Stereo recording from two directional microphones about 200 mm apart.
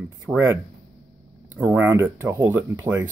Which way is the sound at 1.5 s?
10° right (ahead or behind).